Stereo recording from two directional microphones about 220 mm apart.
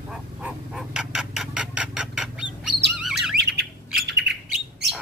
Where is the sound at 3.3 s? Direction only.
50° right (ahead or behind).